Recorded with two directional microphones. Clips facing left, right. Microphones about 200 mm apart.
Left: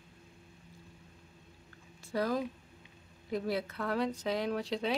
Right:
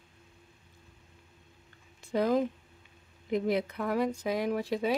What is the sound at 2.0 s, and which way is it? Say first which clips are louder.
Speech: right 5 dB; 20° right (ahead or behind).